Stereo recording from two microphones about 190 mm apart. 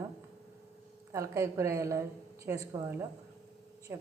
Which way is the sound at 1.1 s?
15° right (ahead or behind).